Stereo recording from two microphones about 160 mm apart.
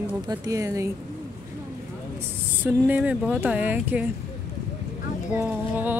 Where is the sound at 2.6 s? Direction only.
10° right (ahead or behind).